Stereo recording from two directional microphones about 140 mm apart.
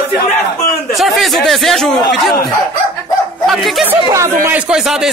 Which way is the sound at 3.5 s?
Centre (ahead or behind).